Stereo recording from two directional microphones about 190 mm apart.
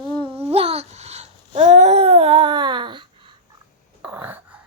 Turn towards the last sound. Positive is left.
turn(degrees=-10)  # may be behind; listen again after turning